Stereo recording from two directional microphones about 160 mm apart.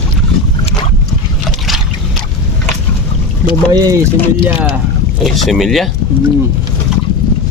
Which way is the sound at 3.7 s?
25° right (ahead or behind).